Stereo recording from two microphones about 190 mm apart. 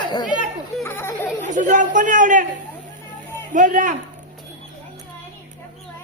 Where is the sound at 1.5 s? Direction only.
40° right (ahead or behind).